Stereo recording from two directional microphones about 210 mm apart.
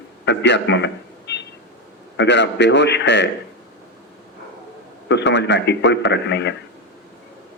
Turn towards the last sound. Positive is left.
turn(degrees=55)  # may be behind; listen again after turning